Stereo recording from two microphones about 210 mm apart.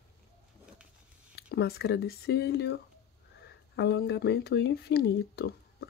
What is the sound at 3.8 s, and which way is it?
Speech, 55° left (ahead or behind).